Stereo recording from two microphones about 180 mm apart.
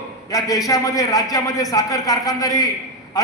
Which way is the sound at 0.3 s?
20° left (ahead or behind).